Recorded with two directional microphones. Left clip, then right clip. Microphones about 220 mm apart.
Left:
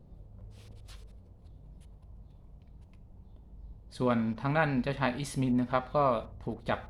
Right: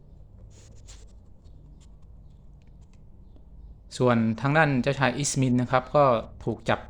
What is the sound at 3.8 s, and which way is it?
Speech, 35° right (ahead or behind).